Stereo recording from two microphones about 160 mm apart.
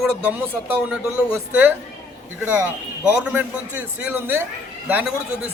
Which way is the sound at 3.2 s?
10° right (ahead or behind).